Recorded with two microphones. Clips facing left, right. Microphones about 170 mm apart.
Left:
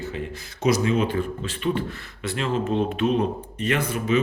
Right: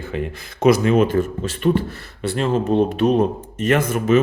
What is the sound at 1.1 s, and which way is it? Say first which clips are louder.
Speech: right 6 dB; 45° right (ahead or behind).